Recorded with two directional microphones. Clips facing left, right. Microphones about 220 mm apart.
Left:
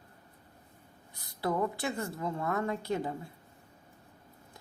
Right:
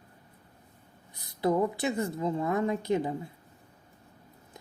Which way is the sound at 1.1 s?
20° right (ahead or behind).